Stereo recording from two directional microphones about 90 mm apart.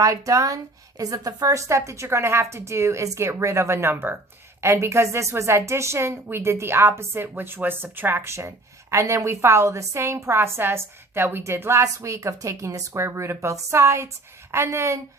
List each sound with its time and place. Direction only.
0.0 s a woman's voice: 40° right (ahead or behind)